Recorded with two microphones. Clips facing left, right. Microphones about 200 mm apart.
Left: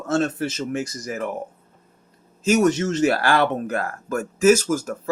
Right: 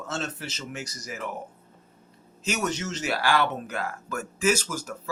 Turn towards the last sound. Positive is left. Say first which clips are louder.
# left 9 dB
turn(degrees=50)  # may be behind; listen again after turning